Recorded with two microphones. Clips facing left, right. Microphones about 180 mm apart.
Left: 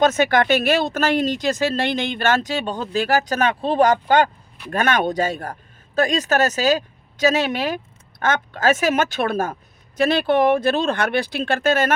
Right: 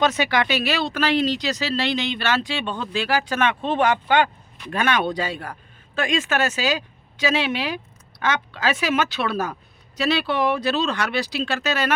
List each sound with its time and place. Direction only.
0.0 s speech: 45° left (ahead or behind)